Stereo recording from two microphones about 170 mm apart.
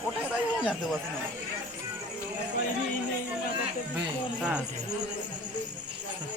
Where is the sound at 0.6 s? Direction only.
5° right (ahead or behind).